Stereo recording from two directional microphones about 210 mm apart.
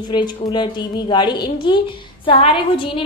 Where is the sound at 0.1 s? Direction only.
20° left (ahead or behind).